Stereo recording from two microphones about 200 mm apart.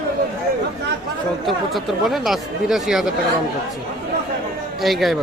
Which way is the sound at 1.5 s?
Centre (ahead or behind).